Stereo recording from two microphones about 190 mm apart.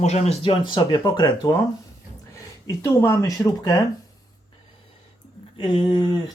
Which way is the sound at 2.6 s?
15° left (ahead or behind).